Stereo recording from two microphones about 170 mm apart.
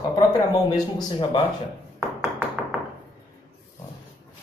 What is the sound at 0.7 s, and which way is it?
Speech, 25° left (ahead or behind).